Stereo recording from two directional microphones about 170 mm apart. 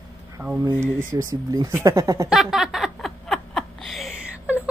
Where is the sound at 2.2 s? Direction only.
Centre (ahead or behind).